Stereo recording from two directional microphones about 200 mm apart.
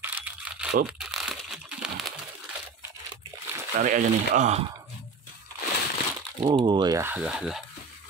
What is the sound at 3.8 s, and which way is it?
Speech, 40° right (ahead or behind).